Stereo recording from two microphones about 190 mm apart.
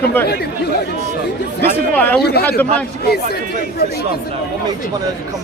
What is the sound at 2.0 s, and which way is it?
Speech, 10° left (ahead or behind).